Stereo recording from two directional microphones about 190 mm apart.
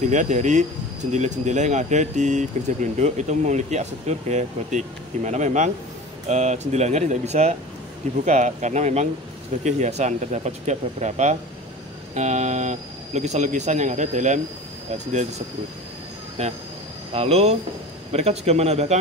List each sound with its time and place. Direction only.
0.1 s speech: 40° right (ahead or behind)
16.4 s speech: 35° right (ahead or behind)